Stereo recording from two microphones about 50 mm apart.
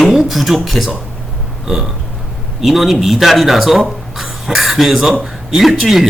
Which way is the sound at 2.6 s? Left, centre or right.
Centre.